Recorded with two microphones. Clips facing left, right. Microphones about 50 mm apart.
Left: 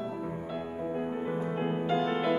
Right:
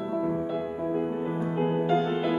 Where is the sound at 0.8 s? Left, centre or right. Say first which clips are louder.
Right 3 dB; centre.